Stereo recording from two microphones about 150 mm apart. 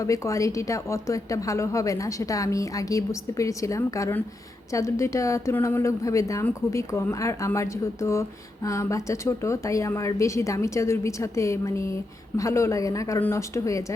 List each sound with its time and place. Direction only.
0.0 s a woman's voice: 20° left (ahead or behind)